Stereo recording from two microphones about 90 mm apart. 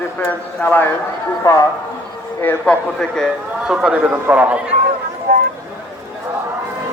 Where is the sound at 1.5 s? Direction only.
40° left (ahead or behind).